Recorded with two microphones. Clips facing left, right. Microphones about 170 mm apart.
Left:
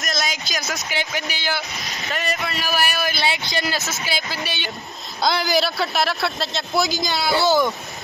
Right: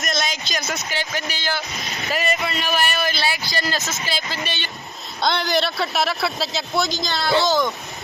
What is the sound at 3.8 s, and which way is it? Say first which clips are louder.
Speech: even; 15° right (ahead or behind).